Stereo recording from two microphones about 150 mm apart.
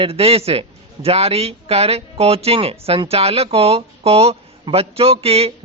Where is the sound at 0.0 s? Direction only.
40° right (ahead or behind).